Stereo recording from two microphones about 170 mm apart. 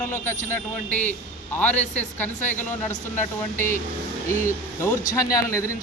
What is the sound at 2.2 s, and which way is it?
A man's voice, 10° left (ahead or behind).